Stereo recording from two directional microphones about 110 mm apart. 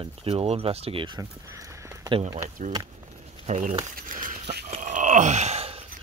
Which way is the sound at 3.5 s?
90° right.